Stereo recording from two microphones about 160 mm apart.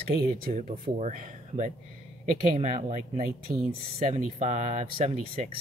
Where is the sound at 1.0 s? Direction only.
55° right (ahead or behind).